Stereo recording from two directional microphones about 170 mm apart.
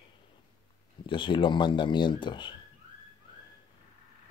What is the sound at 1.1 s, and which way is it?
Speech, 30° left (ahead or behind).